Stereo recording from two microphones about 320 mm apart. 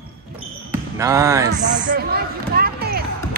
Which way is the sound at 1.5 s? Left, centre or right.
Right.